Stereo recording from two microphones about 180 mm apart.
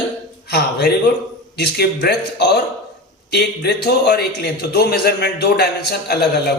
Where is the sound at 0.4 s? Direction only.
65° left (ahead or behind).